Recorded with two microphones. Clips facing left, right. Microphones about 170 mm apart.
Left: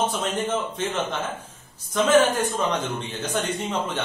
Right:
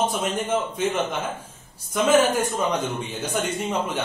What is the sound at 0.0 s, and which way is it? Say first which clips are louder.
Speech: right 1 dB; 10° right (ahead or behind).